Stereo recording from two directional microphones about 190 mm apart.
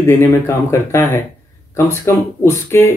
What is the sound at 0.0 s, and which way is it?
Speech, 15° left (ahead or behind).